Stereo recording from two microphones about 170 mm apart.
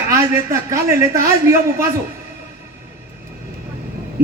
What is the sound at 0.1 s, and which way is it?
A man's voice, 15° right (ahead or behind).